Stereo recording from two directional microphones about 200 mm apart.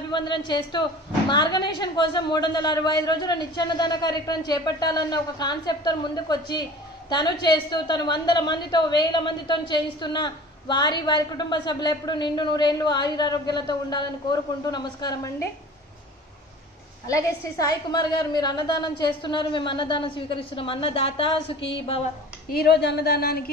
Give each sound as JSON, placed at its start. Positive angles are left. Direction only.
{"t": 0.1, "sound": "a woman's voice", "side_deg": 25}
{"t": 17.1, "sound": "a woman's voice", "side_deg": 20}
{"t": 22.5, "sound": "a woman's voice", "side_deg": 55}